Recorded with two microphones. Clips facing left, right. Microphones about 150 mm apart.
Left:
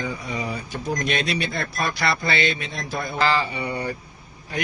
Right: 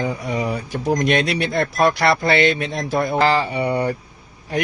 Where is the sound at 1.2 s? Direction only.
70° right (ahead or behind).